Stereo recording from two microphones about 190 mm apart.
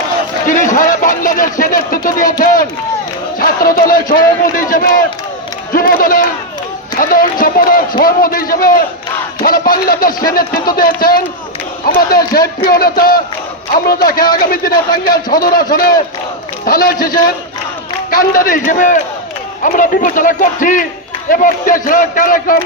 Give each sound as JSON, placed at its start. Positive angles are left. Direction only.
{"t": 0.4, "sound": "a man's voice", "side_deg": 45}
{"t": 3.3, "sound": "a man's voice", "side_deg": 50}
{"t": 14.7, "sound": "a man's voice", "side_deg": 20}
{"t": 15.0, "sound": "a man's voice", "side_deg": 50}